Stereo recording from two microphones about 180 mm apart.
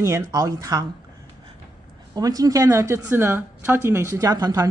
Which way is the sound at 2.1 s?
20° right (ahead or behind).